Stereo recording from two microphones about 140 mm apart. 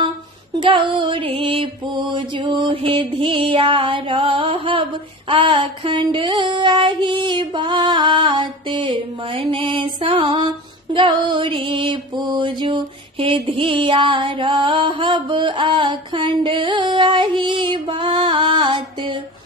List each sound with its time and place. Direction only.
0.6 s female singing: 35° right (ahead or behind)